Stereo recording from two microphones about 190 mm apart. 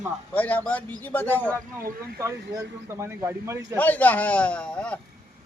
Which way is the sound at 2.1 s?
15° right (ahead or behind).